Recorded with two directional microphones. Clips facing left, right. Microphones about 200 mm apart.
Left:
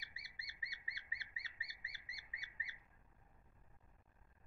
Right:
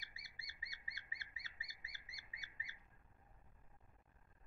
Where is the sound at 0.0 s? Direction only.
45° right (ahead or behind).